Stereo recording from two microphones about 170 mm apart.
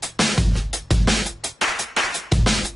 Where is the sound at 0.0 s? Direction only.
Centre (ahead or behind).